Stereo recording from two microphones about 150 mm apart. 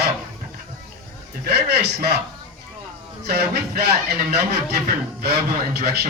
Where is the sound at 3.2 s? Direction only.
90° right.